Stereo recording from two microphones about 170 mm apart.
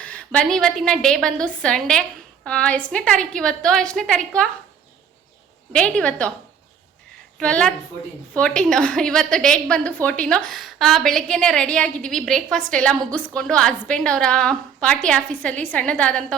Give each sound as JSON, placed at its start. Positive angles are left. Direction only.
{"t": 0.0, "sound": "a woman's voice", "side_deg": 5}
{"t": 5.7, "sound": "a woman's voice", "side_deg": 5}
{"t": 7.3, "sound": "a woman's voice", "side_deg": 5}